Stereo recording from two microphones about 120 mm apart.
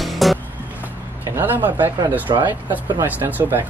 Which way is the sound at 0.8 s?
20° right (ahead or behind).